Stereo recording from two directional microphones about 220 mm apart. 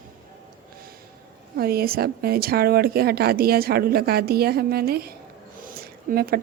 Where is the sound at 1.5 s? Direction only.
45° right (ahead or behind).